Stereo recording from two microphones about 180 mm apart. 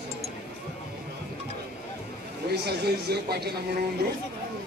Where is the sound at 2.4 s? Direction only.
65° right (ahead or behind).